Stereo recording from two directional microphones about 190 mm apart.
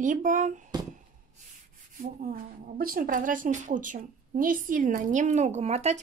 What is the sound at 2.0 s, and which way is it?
Speech, 50° right (ahead or behind).